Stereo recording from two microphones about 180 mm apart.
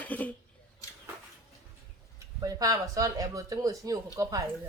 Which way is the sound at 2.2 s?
20° right (ahead or behind).